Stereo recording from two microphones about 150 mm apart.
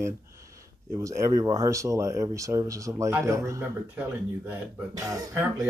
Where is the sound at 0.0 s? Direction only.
20° right (ahead or behind).